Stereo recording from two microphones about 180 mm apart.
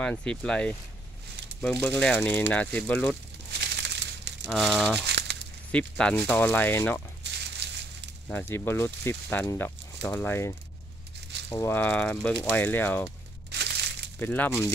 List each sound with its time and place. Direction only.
0.0 s speech: 5° left (ahead or behind)
3.5 s crumpling: 70° right (ahead or behind)
4.5 s speech: centre (ahead or behind)
5.0 s a sound: 70° right (ahead or behind)
5.7 s speech: 5° left (ahead or behind)
7.2 s crushing: 70° right (ahead or behind)
8.3 s speech: 10° left (ahead or behind)
13.5 s crushing: 70° right (ahead or behind)
14.2 s speech: 10° left (ahead or behind)